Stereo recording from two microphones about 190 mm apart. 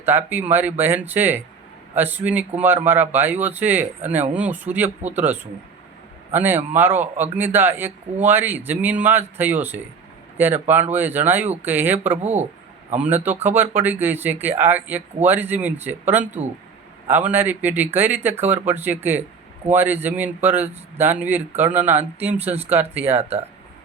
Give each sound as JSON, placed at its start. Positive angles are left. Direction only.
{"t": 0.0, "sound": "speech", "side_deg": -10}
{"t": 23.1, "sound": "speech", "side_deg": -35}